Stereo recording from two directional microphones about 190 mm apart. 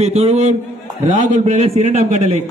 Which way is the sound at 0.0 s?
35° right (ahead or behind).